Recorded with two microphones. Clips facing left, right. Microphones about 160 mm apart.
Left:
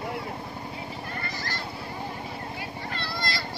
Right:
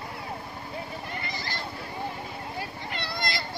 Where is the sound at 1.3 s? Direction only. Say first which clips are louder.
Left 1 dB; 15° right (ahead or behind).